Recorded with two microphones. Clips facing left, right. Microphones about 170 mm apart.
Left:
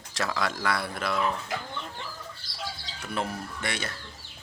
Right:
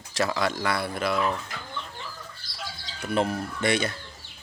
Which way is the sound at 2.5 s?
30° left (ahead or behind).